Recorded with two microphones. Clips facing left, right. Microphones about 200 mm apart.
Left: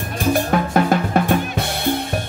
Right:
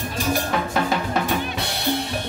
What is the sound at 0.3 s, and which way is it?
Drum, 55° left (ahead or behind).